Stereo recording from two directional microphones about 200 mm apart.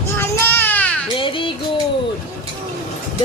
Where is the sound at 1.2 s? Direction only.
25° left (ahead or behind).